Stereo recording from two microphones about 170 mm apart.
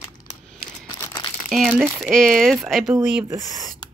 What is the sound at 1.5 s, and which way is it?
Speech, 5° right (ahead or behind).